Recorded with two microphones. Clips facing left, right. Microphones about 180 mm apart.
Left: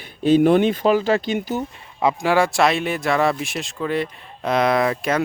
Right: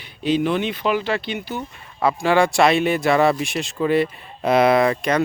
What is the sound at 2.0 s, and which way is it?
Speech, 20° left (ahead or behind).